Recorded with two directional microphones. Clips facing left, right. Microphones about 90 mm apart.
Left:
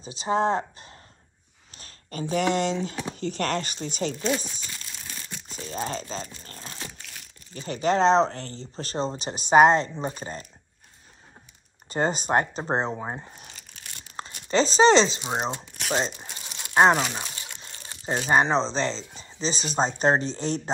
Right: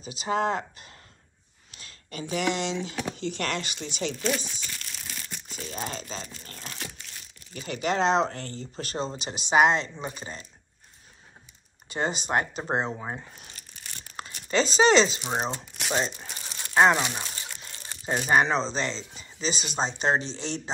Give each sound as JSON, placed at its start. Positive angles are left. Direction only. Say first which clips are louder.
{"t": 0.0, "sound": "speech", "louder": "left 3 dB", "side_deg": 30}
{"t": 11.9, "sound": "speech", "louder": "left 4 dB", "side_deg": 40}
{"t": 14.2, "sound": "crumpling", "louder": "left 2 dB", "side_deg": 30}
{"t": 14.5, "sound": "speech", "louder": "left 3 dB", "side_deg": 30}
{"t": 15.2, "sound": "speech", "louder": "left 1 dB", "side_deg": 15}
{"t": 16.0, "sound": "crumpling", "louder": "left 1 dB", "side_deg": 20}
{"t": 17.5, "sound": "speech", "louder": "right 1 dB", "side_deg": 25}